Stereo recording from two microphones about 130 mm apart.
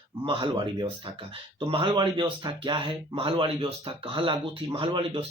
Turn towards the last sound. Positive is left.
turn(degrees=-40)  # may be behind; listen again after turning